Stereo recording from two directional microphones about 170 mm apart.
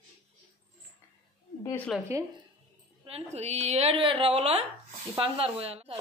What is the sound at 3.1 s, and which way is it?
A woman's voice, 40° right (ahead or behind).